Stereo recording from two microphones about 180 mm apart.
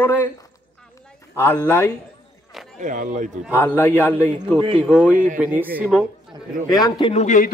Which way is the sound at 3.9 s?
10° right (ahead or behind).